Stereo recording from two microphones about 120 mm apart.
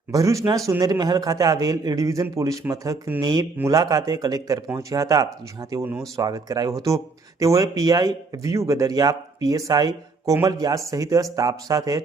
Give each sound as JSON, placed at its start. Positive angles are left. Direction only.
{"t": 0.1, "sound": "a man's voice", "side_deg": -25}